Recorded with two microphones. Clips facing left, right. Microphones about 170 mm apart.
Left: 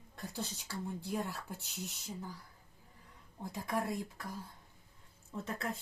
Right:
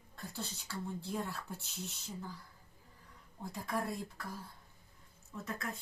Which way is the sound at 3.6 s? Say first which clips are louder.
Left 2 dB; 15° left (ahead or behind).